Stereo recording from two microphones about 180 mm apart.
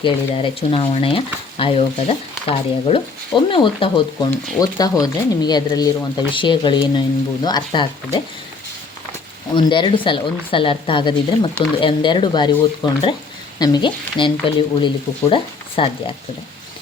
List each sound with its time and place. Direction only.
0.0 s speech: 30° left (ahead or behind)
9.6 s speech: 25° left (ahead or behind)